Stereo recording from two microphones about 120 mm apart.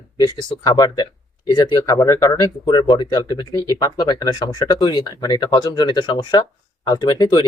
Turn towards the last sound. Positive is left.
turn(degrees=35)  # may be behind; listen again after turning